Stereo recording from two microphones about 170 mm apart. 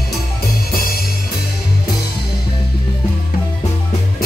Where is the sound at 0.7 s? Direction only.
60° left (ahead or behind).